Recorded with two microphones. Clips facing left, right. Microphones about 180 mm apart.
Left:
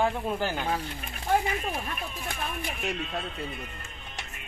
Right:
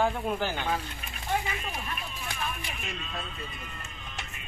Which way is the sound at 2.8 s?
65° left (ahead or behind).